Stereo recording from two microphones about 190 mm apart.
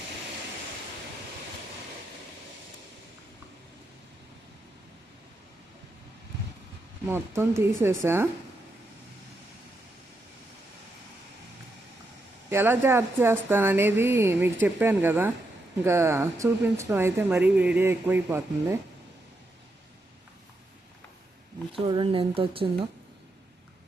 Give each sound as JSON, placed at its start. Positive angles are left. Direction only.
{"t": 7.1, "sound": "speech", "side_deg": -15}
{"t": 12.5, "sound": "speech", "side_deg": -10}
{"t": 21.8, "sound": "speech", "side_deg": -25}